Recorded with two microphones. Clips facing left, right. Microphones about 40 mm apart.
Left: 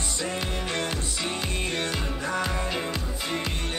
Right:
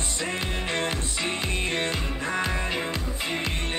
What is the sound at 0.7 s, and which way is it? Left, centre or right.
Music, right.